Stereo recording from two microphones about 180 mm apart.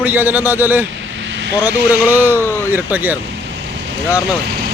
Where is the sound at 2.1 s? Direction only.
10° right (ahead or behind).